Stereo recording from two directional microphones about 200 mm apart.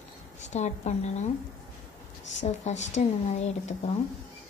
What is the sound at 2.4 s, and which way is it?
A woman's voice, 35° left (ahead or behind).